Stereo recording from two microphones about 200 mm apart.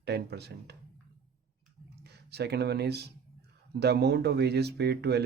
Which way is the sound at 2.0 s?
55° right (ahead or behind).